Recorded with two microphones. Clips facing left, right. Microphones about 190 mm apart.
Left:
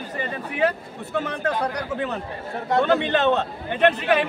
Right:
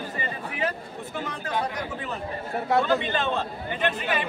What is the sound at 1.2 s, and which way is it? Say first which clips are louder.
A man's voice: left 3 dB; 70° left (ahead or behind).